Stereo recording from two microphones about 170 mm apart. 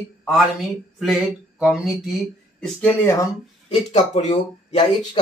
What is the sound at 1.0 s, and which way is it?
Speech, centre (ahead or behind).